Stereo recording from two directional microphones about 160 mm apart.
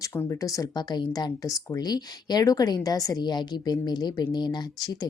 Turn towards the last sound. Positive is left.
turn(degrees=25)  # may be behind; listen again after turning